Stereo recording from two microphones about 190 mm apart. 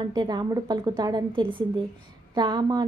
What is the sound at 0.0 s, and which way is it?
Speech, 20° right (ahead or behind).